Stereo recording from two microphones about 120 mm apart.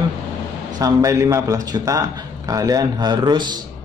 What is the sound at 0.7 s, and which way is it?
A man's voice, 30° right (ahead or behind).